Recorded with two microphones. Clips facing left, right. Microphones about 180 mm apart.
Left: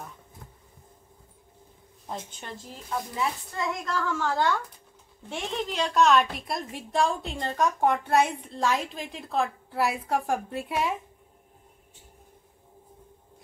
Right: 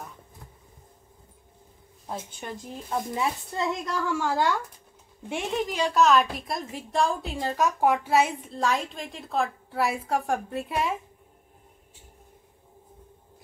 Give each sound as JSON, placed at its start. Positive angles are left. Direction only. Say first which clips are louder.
{"t": 2.0, "sound": "a woman's voice", "louder": "right 2 dB", "side_deg": -5}
{"t": 2.7, "sound": "speech", "louder": "right 3 dB", "side_deg": -25}
{"t": 3.8, "sound": "a woman's voice", "louder": "right 1 dB", "side_deg": -15}